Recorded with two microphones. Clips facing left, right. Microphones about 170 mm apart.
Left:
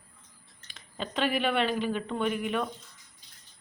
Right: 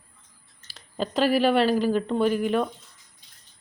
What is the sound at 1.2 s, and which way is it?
Speech, 35° right (ahead or behind).